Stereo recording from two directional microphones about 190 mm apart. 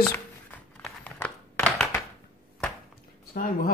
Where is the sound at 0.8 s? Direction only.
5° left (ahead or behind).